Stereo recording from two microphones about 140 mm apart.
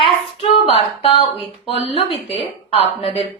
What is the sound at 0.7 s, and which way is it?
Speech, 40° left (ahead or behind).